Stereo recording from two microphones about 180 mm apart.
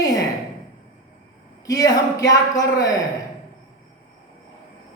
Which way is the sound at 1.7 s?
20° left (ahead or behind).